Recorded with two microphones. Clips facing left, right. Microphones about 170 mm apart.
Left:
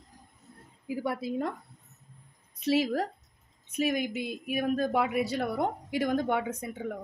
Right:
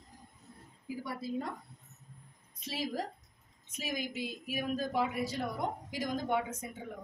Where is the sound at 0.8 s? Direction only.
65° left (ahead or behind).